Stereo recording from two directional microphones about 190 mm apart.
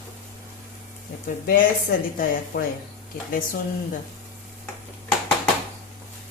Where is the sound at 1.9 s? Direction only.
55° left (ahead or behind).